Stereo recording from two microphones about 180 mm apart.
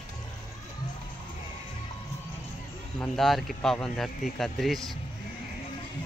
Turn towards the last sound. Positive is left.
turn(degrees=0)  # may be behind; listen again after turning